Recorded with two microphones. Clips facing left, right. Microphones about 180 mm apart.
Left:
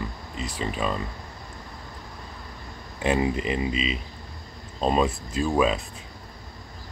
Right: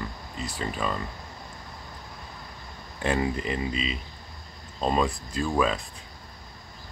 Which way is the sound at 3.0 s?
5° left (ahead or behind).